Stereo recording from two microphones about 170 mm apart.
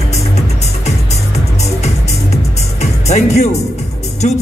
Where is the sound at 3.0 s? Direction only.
40° left (ahead or behind).